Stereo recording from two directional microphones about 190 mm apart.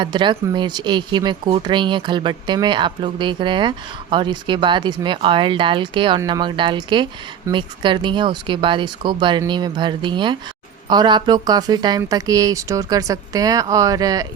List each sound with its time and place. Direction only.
0.0 s speech: 25° right (ahead or behind)